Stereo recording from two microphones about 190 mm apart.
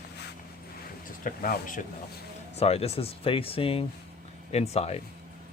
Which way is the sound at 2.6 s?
35° left (ahead or behind).